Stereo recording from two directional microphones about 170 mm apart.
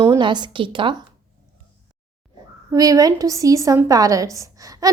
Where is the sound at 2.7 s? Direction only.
20° right (ahead or behind).